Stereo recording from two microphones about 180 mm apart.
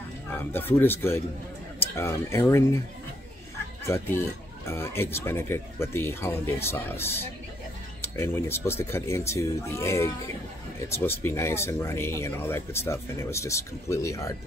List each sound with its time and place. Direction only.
0.3 s speech: 10° left (ahead or behind)
3.8 s speech: 15° left (ahead or behind)